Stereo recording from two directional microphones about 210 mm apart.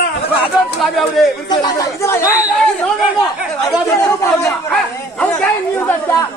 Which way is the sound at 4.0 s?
15° left (ahead or behind).